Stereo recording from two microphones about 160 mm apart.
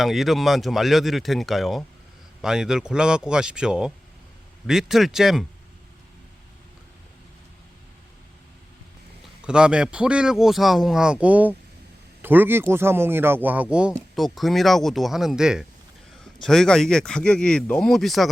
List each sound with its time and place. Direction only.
0.0 s a man's voice: centre (ahead or behind)
9.4 s a man's voice: 5° right (ahead or behind)